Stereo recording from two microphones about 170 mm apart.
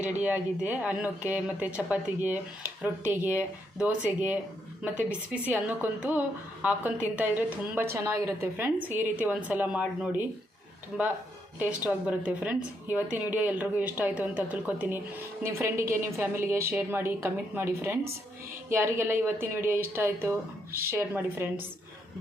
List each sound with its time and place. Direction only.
0.0 s a woman's voice: 10° right (ahead or behind)
11.8 s speech: 10° right (ahead or behind)